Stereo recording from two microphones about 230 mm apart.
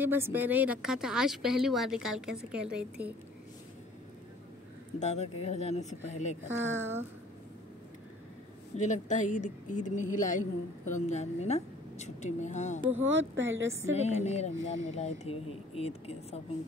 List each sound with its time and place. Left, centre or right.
0.0 s a woman's voice: centre
5.0 s a woman's voice: left
6.4 s speech: centre
8.7 s speech: left
12.9 s speech: right
13.9 s a woman's voice: left